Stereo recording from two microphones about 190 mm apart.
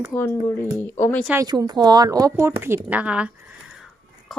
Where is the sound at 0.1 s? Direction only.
10° left (ahead or behind).